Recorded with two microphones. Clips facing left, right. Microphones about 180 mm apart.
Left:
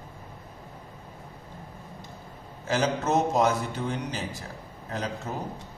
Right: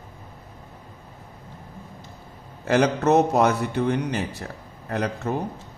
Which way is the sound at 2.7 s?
65° right (ahead or behind).